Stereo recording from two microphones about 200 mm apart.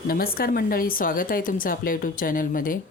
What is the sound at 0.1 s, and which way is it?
Speech, 45° left (ahead or behind).